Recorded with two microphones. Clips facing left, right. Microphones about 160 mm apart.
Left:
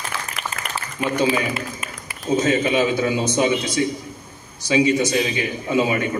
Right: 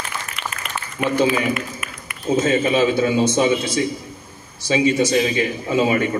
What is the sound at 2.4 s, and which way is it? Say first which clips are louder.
A man's voice: right 2 dB; 30° right (ahead or behind).